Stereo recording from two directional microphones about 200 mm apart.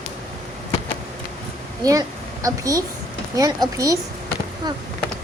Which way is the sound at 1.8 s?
15° right (ahead or behind).